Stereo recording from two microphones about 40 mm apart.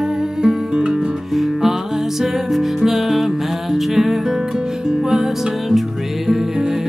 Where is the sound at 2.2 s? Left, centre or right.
Centre.